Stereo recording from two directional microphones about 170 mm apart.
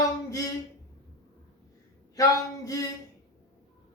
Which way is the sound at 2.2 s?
20° left (ahead or behind).